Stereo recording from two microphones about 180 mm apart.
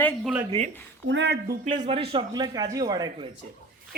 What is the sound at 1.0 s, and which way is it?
Speech, 80° right.